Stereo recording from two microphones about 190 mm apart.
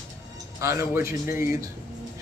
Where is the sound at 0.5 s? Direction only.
15° right (ahead or behind).